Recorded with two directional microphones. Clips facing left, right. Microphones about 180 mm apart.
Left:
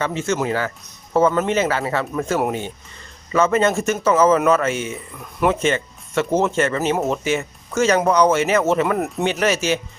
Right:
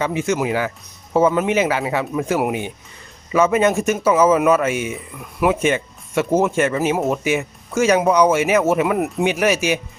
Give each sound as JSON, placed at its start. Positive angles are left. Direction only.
{"t": 0.0, "sound": "speech", "side_deg": -15}